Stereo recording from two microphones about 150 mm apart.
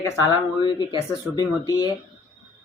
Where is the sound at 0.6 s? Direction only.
30° left (ahead or behind).